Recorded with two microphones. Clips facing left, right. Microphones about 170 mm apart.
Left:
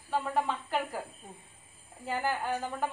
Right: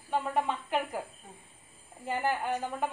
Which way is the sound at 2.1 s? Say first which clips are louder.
Right 1 dB; centre (ahead or behind).